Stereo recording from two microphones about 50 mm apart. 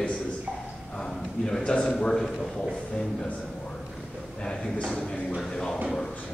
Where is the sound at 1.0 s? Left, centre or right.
Centre.